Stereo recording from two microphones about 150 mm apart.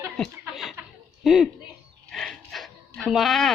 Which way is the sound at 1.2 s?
5° right (ahead or behind).